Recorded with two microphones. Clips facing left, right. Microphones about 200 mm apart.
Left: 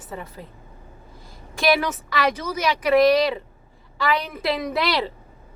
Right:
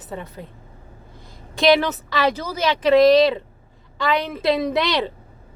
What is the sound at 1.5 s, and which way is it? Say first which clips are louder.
Speech: right 4 dB; 20° right (ahead or behind).